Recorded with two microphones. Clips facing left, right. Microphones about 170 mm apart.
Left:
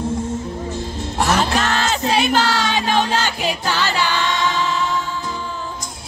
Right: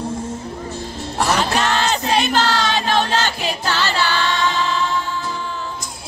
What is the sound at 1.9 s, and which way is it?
Music, 10° left (ahead or behind).